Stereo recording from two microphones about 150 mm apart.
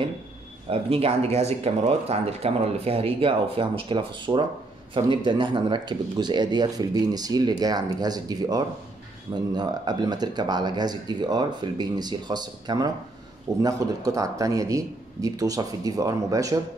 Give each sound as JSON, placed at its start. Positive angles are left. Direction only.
{"t": 0.7, "sound": "speech", "side_deg": -40}